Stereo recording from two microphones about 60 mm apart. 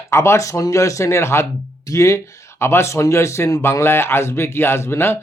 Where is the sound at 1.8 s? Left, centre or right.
Left.